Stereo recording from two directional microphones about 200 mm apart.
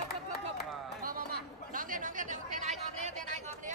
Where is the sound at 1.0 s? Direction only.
45° right (ahead or behind).